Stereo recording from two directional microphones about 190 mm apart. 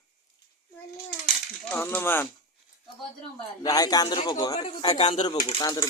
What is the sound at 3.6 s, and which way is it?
Speech, 20° left (ahead or behind).